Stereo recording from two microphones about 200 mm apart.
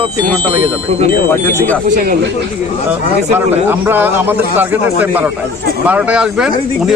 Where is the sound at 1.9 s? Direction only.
40° right (ahead or behind).